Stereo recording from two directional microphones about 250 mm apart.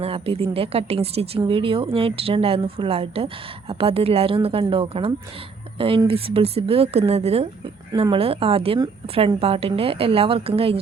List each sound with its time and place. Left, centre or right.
0.0 s speech: right